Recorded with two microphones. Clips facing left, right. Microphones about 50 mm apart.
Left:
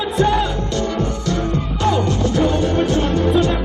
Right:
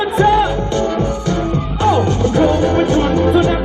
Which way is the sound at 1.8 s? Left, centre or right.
Right.